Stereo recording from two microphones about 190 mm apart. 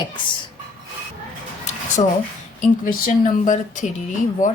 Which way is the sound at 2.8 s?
45° left (ahead or behind).